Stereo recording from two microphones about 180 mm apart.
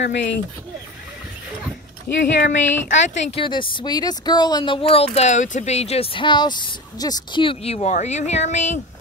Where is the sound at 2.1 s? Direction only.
10° left (ahead or behind).